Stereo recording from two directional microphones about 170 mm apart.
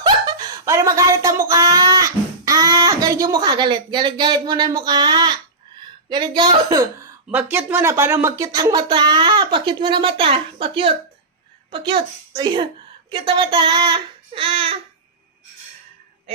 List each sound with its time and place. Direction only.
0.0 s speech: 25° right (ahead or behind)
7.3 s a child's voice: 10° right (ahead or behind); by 14.8 s 35° right (ahead or behind)